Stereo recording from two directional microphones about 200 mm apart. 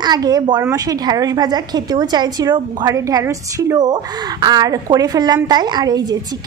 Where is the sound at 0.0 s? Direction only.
20° right (ahead or behind).